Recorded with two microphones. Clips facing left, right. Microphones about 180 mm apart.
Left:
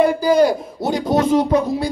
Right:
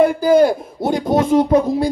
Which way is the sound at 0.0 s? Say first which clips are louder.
Right 2 dB; 50° right (ahead or behind).